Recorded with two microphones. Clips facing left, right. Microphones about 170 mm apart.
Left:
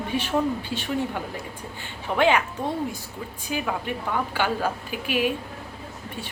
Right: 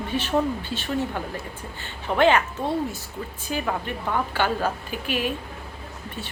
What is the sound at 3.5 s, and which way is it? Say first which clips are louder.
A woman's voice: even; 10° left (ahead or behind).